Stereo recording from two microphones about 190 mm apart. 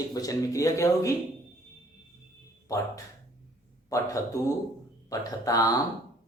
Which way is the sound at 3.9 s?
15° left (ahead or behind).